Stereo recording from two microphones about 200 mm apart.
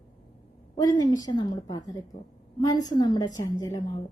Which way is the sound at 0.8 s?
20° left (ahead or behind).